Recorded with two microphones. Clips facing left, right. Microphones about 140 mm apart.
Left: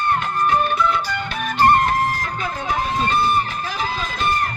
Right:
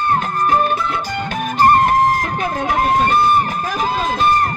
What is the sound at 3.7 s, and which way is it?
Run, 45° right (ahead or behind).